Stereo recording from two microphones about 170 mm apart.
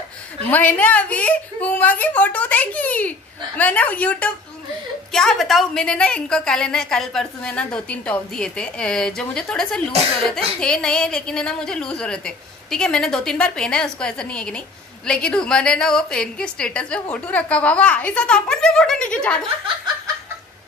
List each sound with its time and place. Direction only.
0.4 s a woman's voice: 10° left (ahead or behind)